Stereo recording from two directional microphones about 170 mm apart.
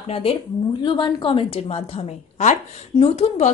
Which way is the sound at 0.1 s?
35° left (ahead or behind).